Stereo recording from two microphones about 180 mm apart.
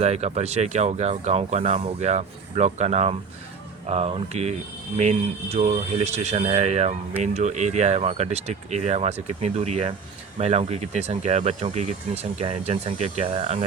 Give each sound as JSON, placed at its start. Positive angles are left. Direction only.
{"t": 0.0, "sound": "speech", "side_deg": -35}